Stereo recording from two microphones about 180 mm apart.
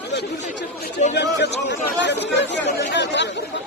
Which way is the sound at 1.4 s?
70° left (ahead or behind).